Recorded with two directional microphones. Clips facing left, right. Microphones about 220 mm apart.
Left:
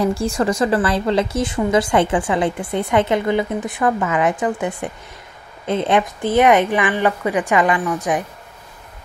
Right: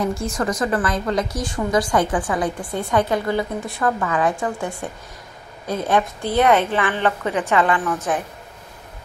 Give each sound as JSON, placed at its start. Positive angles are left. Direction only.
{"t": 0.0, "sound": "a woman's voice", "side_deg": 30}